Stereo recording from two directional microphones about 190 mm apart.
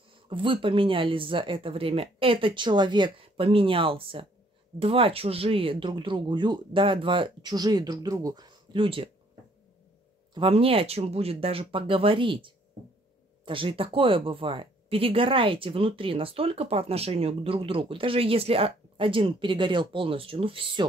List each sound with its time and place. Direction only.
0.1 s speech: 25° right (ahead or behind)
10.3 s speech: 30° right (ahead or behind)